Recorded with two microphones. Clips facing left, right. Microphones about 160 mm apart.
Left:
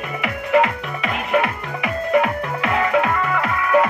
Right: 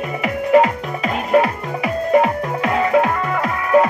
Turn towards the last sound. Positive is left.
turn(degrees=-30)  # may be behind; listen again after turning